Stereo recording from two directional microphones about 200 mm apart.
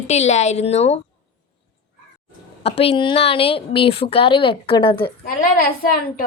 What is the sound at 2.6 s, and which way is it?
A woman's voice, 30° left (ahead or behind).